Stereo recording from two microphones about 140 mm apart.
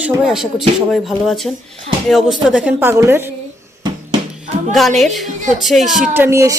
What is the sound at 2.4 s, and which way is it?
Speech, 5° right (ahead or behind).